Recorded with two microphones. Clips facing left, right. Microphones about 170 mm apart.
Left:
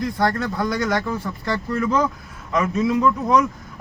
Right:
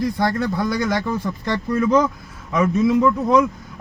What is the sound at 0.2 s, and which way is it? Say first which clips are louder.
Speech: right 1 dB; 15° right (ahead or behind).